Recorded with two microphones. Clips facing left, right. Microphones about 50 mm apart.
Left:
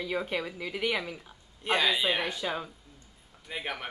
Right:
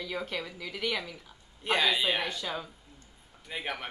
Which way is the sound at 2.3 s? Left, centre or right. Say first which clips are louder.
Left 3 dB; centre.